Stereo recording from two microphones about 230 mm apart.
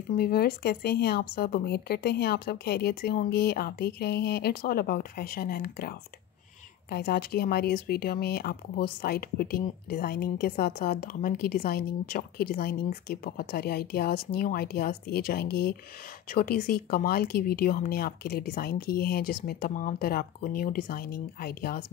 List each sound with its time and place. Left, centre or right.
0.2 s a woman's voice: left